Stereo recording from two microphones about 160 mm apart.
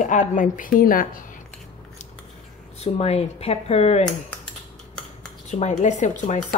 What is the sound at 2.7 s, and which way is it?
Speech, 40° left (ahead or behind).